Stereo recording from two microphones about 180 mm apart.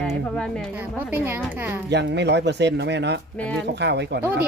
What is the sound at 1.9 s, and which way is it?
Speech, 70° right (ahead or behind).